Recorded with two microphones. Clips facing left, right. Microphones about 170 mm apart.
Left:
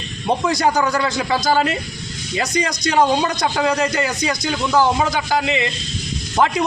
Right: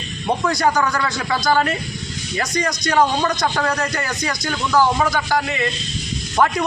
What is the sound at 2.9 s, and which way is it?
A woman's voice, 15° left (ahead or behind).